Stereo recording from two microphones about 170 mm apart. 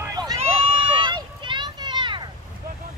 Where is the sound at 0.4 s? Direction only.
35° right (ahead or behind).